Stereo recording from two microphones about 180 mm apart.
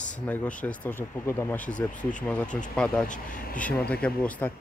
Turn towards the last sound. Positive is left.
turn(degrees=5)  # may be behind; listen again after turning